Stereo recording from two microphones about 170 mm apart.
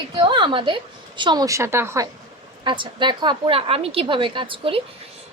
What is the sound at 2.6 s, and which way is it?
A woman's voice, 30° right (ahead or behind).